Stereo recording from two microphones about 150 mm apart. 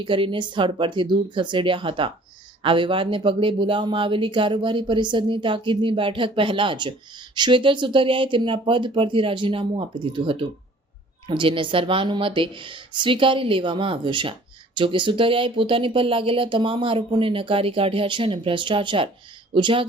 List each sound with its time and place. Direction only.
0.0 s speech: 35° right (ahead or behind)